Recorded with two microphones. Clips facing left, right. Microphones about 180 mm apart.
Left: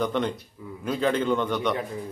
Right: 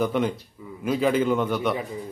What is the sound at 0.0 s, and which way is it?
A man's voice, 5° right (ahead or behind).